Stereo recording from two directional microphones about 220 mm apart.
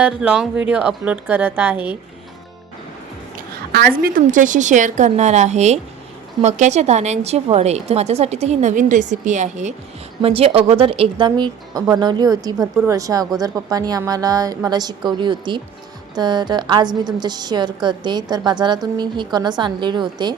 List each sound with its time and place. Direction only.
0.0 s a woman's voice: 5° right (ahead or behind)
3.3 s a woman's voice: 40° right (ahead or behind); by 20.3 s 20° right (ahead or behind)